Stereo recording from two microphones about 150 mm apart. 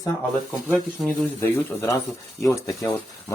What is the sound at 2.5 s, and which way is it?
Speech, 20° left (ahead or behind).